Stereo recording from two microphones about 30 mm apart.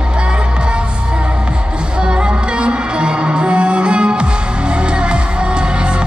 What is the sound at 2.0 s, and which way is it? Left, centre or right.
Music, right.